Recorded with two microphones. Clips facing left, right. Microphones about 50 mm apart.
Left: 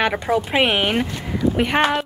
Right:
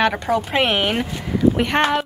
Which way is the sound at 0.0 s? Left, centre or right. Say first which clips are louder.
Right 1 dB; centre.